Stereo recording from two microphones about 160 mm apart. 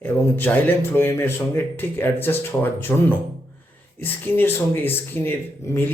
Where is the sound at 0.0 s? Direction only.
10° left (ahead or behind).